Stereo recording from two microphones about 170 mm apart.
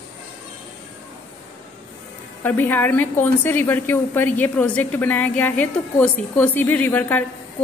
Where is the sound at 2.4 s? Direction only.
10° left (ahead or behind).